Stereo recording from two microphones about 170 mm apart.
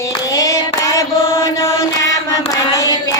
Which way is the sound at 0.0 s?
20° left (ahead or behind).